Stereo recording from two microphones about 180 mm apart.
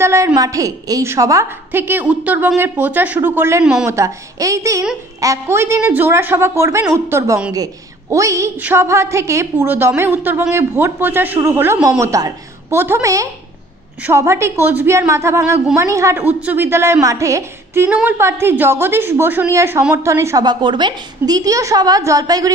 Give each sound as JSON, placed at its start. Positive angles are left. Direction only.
{"t": 0.0, "sound": "a woman's voice", "side_deg": -15}